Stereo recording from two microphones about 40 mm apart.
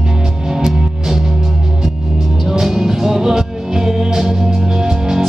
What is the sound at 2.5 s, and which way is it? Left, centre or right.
Music, centre.